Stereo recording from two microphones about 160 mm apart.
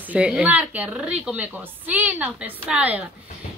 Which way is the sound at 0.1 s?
10° right (ahead or behind).